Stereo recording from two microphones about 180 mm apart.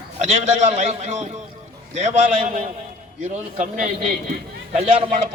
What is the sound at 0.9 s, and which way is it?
Speech, 40° right (ahead or behind).